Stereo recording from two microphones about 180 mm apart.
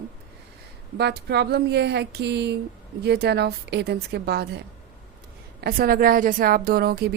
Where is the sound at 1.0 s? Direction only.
65° right (ahead or behind).